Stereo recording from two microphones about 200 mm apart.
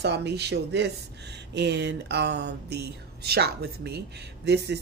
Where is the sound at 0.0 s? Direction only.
55° right (ahead or behind).